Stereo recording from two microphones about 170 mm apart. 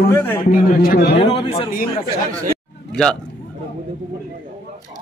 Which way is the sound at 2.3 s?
50° right (ahead or behind).